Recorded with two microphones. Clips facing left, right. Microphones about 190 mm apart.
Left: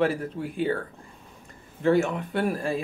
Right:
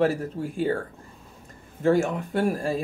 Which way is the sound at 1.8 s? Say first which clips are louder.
Right 1 dB; 45° right (ahead or behind).